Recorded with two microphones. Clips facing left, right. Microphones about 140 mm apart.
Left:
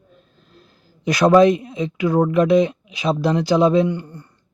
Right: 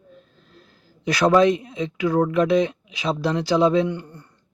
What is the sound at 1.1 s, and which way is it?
Speech, 15° left (ahead or behind).